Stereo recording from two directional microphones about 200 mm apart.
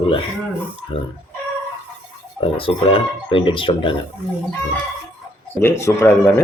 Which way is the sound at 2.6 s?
25° left (ahead or behind).